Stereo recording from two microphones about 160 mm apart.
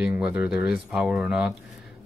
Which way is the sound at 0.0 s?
5° right (ahead or behind).